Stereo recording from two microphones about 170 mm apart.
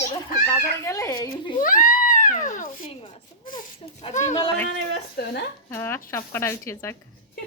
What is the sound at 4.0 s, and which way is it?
Speech, 45° left (ahead or behind).